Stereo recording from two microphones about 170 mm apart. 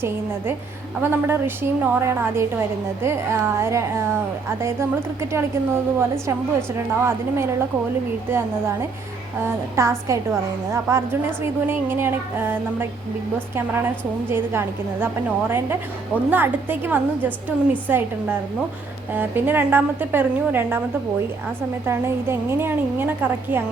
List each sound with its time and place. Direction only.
1.1 s a woman's voice: 10° right (ahead or behind)
21.8 s a woman's voice: 15° right (ahead or behind)